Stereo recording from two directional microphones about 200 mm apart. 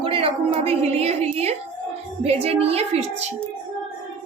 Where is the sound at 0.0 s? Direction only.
25° right (ahead or behind).